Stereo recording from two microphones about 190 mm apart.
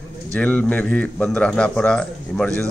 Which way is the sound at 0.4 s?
5° left (ahead or behind).